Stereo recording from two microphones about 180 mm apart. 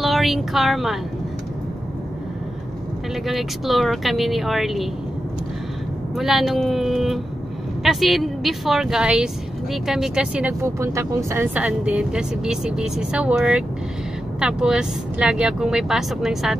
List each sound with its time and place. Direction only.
0.0 s speech: centre (ahead or behind)
3.3 s speech: centre (ahead or behind)
6.1 s speech: centre (ahead or behind)